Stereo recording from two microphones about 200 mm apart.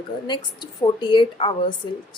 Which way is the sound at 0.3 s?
20° left (ahead or behind).